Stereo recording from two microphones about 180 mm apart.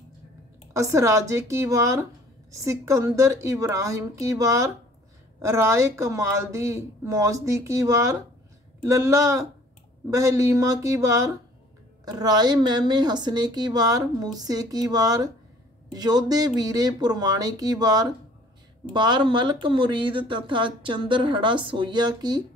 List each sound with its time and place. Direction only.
0.7 s a woman's voice: 15° right (ahead or behind)